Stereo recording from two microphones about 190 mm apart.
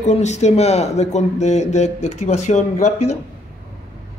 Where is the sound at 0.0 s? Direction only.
35° left (ahead or behind).